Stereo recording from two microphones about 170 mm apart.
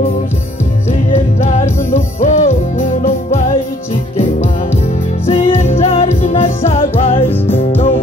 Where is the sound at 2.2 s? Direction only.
45° left (ahead or behind).